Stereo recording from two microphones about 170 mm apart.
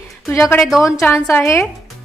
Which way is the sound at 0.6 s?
Centre (ahead or behind).